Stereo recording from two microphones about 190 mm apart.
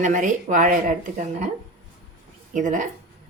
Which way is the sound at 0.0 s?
40° right (ahead or behind).